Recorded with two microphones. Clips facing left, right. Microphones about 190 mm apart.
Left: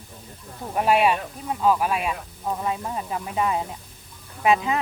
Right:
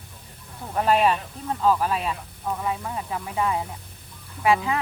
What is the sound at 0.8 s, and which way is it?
Speech, 10° left (ahead or behind).